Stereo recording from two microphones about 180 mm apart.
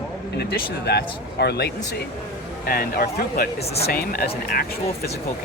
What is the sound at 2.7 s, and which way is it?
Speech, 55° left (ahead or behind).